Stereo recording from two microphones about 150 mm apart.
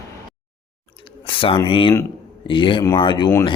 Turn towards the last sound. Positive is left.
turn(degrees=30)  # may be behind; listen again after turning